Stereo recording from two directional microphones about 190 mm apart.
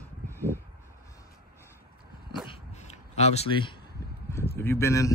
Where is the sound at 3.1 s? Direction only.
35° left (ahead or behind).